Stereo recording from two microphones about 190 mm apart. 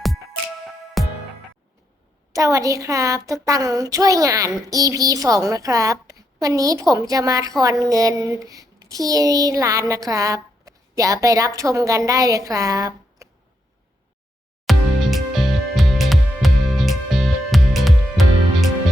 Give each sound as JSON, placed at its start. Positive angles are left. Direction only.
{"t": 1.0, "sound": "music", "side_deg": 0}
{"t": 2.3, "sound": "a child's voice", "side_deg": -15}
{"t": 14.7, "sound": "music", "side_deg": 0}